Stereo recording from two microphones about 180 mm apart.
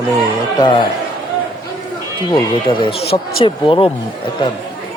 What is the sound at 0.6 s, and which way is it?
Speech, 25° left (ahead or behind).